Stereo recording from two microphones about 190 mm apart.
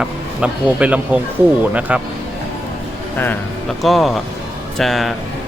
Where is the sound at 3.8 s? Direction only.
Centre (ahead or behind).